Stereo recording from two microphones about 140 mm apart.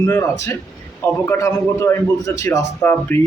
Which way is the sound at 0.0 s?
20° left (ahead or behind).